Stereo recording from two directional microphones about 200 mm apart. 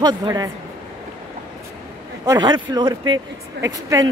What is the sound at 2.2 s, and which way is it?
A woman's voice, 20° right (ahead or behind).